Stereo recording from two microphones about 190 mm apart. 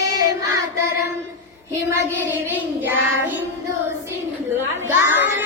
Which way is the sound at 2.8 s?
10° right (ahead or behind).